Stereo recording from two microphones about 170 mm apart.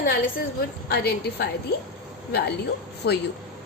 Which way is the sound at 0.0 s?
60° left (ahead or behind).